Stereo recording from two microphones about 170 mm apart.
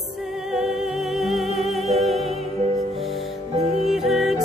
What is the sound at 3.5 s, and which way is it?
Music, 40° right (ahead or behind).